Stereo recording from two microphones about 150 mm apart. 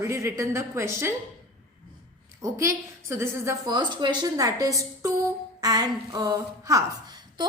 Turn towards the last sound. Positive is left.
turn(degrees=-30)  # may be behind; listen again after turning